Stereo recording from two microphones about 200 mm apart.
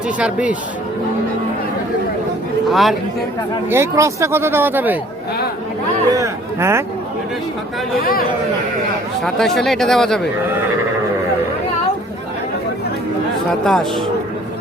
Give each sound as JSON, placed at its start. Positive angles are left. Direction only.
{"t": 0.2, "sound": "speech", "side_deg": -5}
{"t": 2.6, "sound": "speech", "side_deg": 0}
{"t": 3.7, "sound": "speech", "side_deg": -15}
{"t": 6.1, "sound": "speech", "side_deg": -15}
{"t": 9.2, "sound": "speech", "side_deg": 0}
{"t": 13.7, "sound": "speech", "side_deg": 0}